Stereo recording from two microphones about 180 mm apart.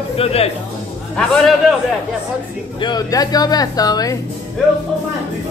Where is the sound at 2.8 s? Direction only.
20° left (ahead or behind).